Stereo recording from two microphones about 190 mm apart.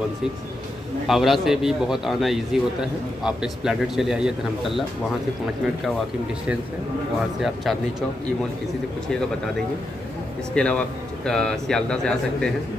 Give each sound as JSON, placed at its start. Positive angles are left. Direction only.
{"t": 1.0, "sound": "a man's voice", "side_deg": 0}
{"t": 10.5, "sound": "a man's voice", "side_deg": 5}